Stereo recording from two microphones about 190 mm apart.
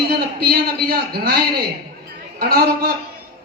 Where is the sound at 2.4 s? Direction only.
50° right (ahead or behind).